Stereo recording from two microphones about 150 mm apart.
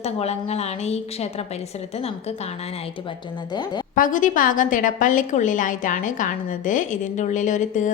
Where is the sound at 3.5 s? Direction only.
30° left (ahead or behind).